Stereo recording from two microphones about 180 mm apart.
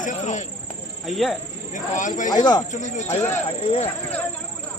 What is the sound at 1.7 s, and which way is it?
Speech, 45° left (ahead or behind).